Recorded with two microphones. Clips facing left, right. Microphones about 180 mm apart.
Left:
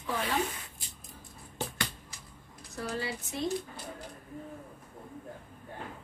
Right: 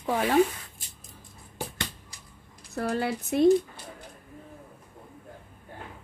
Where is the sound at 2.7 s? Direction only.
60° right (ahead or behind).